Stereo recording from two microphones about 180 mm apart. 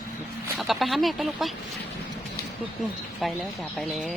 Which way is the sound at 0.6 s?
Centre (ahead or behind).